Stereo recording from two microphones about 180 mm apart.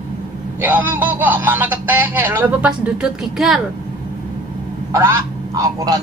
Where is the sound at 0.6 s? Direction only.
10° right (ahead or behind).